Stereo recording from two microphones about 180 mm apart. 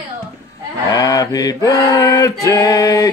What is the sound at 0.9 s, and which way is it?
Male singing, 20° left (ahead or behind).